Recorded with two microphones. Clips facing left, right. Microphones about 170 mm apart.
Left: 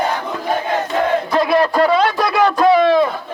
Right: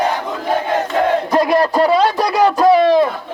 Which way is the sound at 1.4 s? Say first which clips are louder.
Right 1 dB; 40° right (ahead or behind).